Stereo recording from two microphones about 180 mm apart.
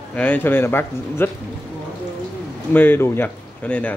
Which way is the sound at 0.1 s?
10° left (ahead or behind).